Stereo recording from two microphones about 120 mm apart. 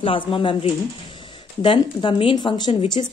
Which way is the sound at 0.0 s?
45° left (ahead or behind).